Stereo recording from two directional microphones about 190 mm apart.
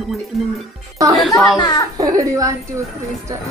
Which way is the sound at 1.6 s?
20° left (ahead or behind).